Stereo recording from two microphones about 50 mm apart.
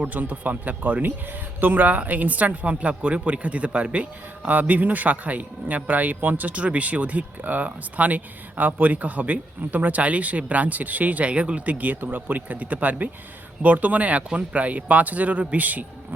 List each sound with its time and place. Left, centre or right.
0.0 s a man's voice: right
4.4 s a man's voice: right